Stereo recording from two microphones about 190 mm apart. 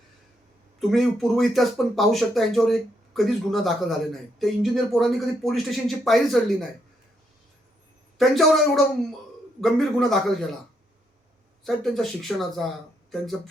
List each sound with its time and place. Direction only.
0.8 s speech: centre (ahead or behind)
8.2 s speech: centre (ahead or behind)
11.6 s speech: centre (ahead or behind)